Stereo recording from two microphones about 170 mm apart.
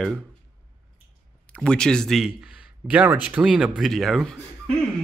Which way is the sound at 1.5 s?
5° left (ahead or behind).